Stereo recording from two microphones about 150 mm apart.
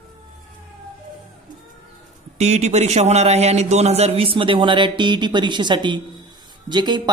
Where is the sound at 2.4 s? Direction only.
45° right (ahead or behind).